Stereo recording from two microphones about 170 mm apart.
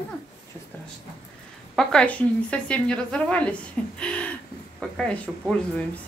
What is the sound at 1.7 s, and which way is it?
A woman's voice, 5° left (ahead or behind).